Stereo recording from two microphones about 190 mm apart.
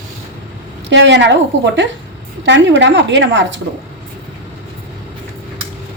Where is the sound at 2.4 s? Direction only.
70° right (ahead or behind).